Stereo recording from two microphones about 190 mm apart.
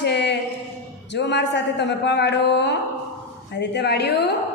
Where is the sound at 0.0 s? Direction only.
65° left (ahead or behind).